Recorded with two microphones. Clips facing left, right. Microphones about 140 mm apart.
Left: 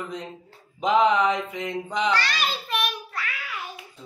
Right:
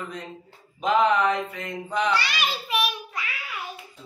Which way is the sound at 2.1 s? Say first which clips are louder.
Even; 10° right (ahead or behind).